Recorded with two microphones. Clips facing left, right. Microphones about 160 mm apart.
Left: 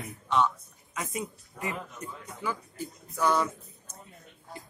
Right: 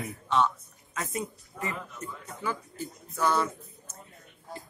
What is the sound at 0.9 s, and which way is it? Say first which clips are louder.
Speech: right 1 dB; 10° left (ahead or behind).